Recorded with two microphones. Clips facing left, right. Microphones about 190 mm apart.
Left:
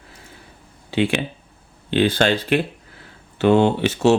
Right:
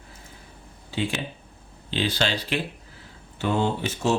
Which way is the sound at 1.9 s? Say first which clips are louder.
Left 8 dB; 55° left (ahead or behind).